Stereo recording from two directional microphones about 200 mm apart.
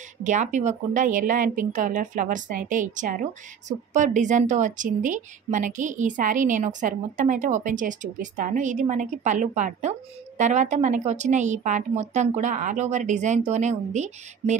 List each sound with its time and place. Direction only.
0.2 s a woman's voice: 40° right (ahead or behind)